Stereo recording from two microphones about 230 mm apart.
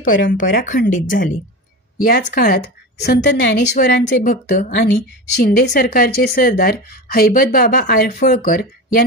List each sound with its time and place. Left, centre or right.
0.1 s speech: left